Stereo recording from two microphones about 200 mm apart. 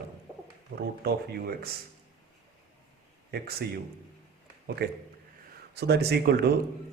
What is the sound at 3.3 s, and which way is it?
Speech, 50° right (ahead or behind).